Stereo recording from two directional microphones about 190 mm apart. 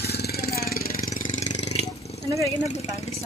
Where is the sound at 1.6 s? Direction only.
35° left (ahead or behind).